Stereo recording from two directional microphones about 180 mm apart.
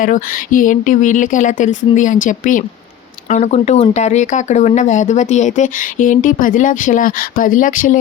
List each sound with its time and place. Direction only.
0.0 s speech: 50° left (ahead or behind)